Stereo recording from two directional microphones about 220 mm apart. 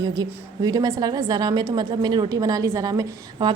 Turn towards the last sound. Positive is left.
turn(degrees=-20)  # may be behind; listen again after turning